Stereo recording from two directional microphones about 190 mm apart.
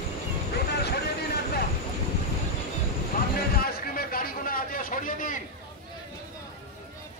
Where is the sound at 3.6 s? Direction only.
50° left (ahead or behind).